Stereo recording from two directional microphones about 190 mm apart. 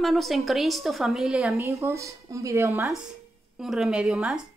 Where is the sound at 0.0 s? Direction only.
Centre (ahead or behind).